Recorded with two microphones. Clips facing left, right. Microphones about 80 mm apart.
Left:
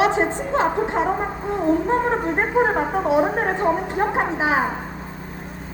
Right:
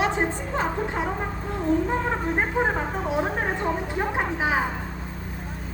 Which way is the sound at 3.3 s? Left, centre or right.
Left.